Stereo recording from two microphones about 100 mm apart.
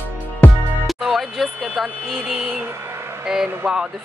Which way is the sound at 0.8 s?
Centre (ahead or behind).